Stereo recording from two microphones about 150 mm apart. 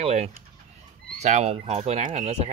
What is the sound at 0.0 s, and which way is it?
Speech, 45° right (ahead or behind).